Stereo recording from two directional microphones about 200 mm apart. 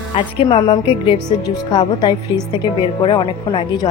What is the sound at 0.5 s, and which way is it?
Speech, 25° left (ahead or behind).